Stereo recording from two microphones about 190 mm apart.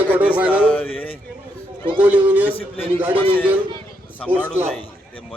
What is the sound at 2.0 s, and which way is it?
Speech, 10° right (ahead or behind).